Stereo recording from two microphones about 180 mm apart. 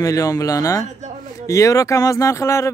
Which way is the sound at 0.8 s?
40° right (ahead or behind).